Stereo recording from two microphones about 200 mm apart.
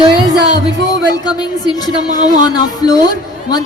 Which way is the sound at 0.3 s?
20° left (ahead or behind).